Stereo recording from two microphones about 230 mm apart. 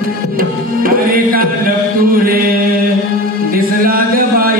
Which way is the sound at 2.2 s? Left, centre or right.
Right.